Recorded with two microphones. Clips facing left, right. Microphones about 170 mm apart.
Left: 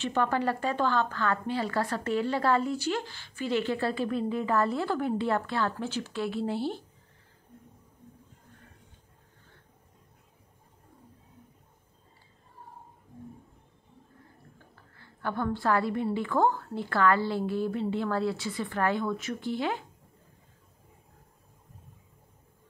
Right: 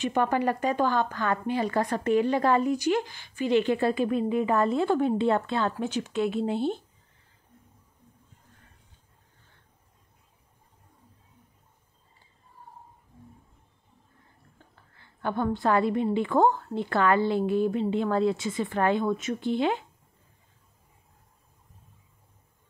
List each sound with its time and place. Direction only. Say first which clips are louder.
0.0 s speech: right 3 dB; 15° right (ahead or behind)
15.0 s a woman's voice: right 3 dB; 20° right (ahead or behind)